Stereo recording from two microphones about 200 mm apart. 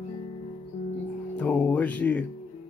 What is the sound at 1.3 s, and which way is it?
Speech, 10° left (ahead or behind).